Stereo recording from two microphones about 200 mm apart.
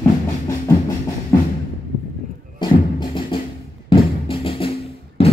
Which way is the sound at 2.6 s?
25° left (ahead or behind).